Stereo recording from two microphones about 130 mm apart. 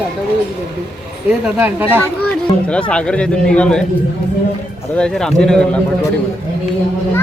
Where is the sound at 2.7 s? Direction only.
10° left (ahead or behind).